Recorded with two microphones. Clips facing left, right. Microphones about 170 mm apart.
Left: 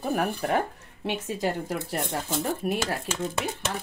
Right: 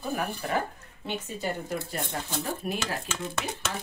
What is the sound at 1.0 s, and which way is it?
Speech, 90° left.